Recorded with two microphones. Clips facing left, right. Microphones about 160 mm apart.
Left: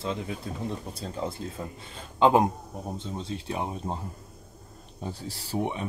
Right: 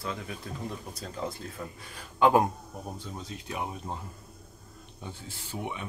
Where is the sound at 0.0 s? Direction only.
25° left (ahead or behind).